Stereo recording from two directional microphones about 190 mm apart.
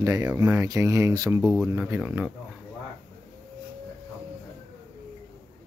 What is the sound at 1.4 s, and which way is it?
Speech, 5° right (ahead or behind).